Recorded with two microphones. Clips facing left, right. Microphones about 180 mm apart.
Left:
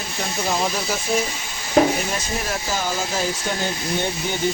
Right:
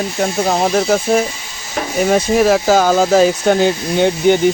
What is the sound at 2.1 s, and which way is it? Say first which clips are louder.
Speech: right 15 dB; 85° right.